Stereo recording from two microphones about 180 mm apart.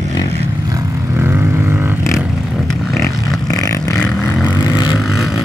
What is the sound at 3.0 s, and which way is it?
Vehicle, 20° left (ahead or behind).